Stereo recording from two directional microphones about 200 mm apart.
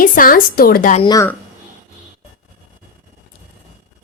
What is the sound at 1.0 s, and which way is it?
Speech, 20° left (ahead or behind).